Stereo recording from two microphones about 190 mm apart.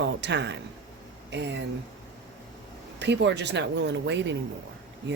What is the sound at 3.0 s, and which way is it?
Speech, 65° right (ahead or behind).